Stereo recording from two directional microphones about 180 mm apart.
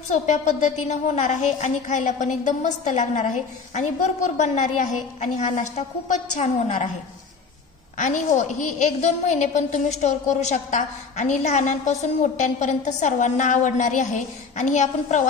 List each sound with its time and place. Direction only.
0.1 s a woman's voice: 40° left (ahead or behind)
8.0 s a woman's voice: 45° left (ahead or behind)